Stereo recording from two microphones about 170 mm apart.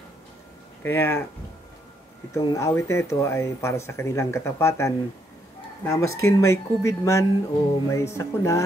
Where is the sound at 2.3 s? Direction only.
15° left (ahead or behind).